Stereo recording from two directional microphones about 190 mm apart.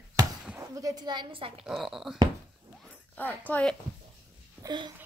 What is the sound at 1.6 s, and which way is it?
Speech, centre (ahead or behind).